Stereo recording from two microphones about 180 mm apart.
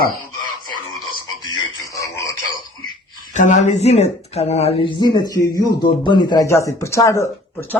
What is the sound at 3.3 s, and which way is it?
Speech, 40° left (ahead or behind).